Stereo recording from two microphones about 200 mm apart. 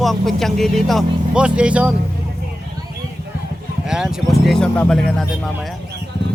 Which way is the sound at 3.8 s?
5° right (ahead or behind).